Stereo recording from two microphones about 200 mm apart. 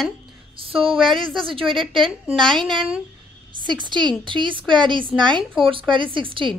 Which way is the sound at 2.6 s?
Centre (ahead or behind).